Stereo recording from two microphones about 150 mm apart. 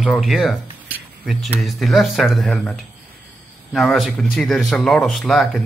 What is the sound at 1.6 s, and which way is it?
Speech, centre (ahead or behind).